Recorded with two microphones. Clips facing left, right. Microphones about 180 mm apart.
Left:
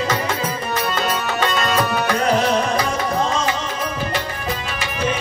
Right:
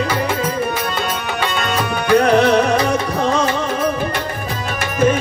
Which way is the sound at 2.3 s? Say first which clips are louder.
Right 5 dB; 65° right (ahead or behind).